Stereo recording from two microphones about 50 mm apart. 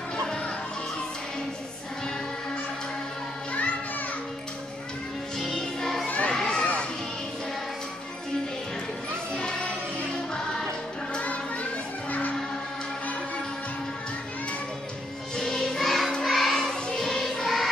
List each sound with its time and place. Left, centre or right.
5.4 s music: centre
6.0 s crowd: left
6.3 s children playing: centre
9.3 s music: centre
11.1 s music: left
15.3 s music: centre